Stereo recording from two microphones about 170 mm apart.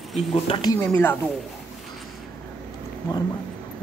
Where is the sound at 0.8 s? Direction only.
15° left (ahead or behind).